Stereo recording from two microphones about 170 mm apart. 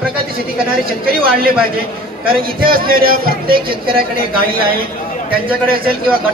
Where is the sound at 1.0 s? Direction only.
60° right (ahead or behind).